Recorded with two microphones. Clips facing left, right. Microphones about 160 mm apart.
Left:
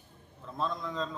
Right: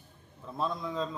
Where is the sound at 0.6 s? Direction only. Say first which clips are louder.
Right 1 dB; 10° right (ahead or behind).